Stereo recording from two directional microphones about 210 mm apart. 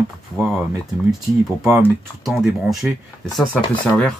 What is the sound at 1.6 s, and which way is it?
Speech, 5° right (ahead or behind).